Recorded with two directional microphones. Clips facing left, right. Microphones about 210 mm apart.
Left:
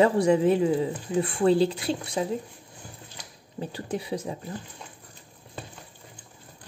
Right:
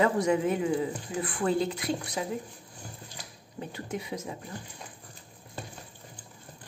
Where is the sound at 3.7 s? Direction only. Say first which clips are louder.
Left 5 dB; 30° left (ahead or behind).